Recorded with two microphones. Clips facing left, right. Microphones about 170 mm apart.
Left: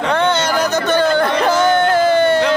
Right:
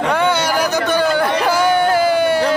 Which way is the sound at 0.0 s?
10° right (ahead or behind).